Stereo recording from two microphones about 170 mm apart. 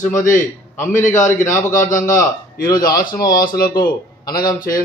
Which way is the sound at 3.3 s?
60° left (ahead or behind).